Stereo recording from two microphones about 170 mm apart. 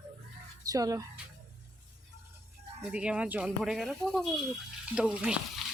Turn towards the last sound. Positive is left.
turn(degrees=-5)  # may be behind; listen again after turning